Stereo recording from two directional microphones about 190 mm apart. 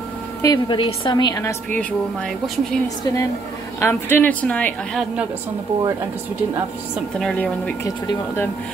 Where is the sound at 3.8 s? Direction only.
10° left (ahead or behind).